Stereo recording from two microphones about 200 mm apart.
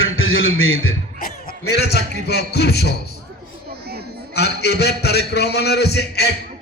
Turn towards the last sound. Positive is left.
turn(degrees=55)  # may be behind; listen again after turning